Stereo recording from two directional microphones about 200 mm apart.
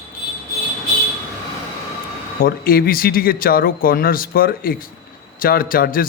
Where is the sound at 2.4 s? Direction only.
45° left (ahead or behind).